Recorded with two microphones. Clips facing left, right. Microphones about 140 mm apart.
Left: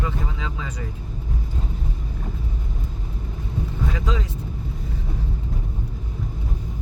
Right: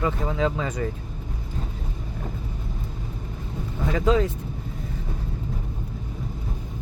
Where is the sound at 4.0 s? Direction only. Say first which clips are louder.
Right 7 dB; 50° right (ahead or behind).